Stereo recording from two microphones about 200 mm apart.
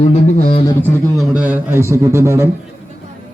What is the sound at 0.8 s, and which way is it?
A man's voice, 5° right (ahead or behind).